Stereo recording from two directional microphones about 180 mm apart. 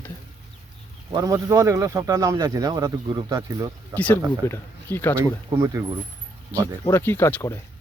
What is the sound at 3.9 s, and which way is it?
Speech, 10° left (ahead or behind).